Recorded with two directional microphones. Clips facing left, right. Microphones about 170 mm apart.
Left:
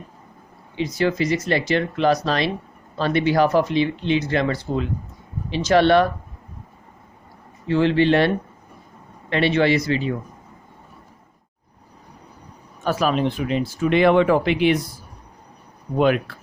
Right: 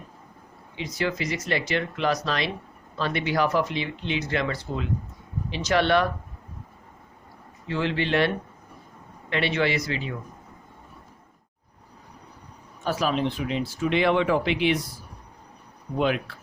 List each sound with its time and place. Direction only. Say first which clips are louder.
0.8 s speech: left 7 dB; 35° left (ahead or behind)
7.7 s speech: left 8 dB; 30° left (ahead or behind)
9.3 s speech: left 6 dB; 35° left (ahead or behind)
12.8 s speech: left 4 dB; 55° left (ahead or behind)
16.0 s speech: left 6 dB; 55° left (ahead or behind)